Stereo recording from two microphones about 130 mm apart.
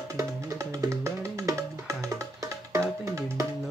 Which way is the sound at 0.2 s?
25° right (ahead or behind).